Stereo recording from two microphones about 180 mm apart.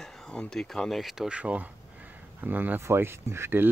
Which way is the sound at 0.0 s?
Centre (ahead or behind).